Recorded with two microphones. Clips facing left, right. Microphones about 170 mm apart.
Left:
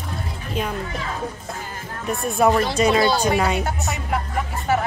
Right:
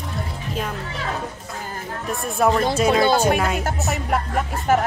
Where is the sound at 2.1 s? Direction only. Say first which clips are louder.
Left 2 dB; centre (ahead or behind).